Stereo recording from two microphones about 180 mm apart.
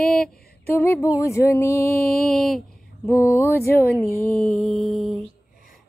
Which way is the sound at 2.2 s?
Centre (ahead or behind).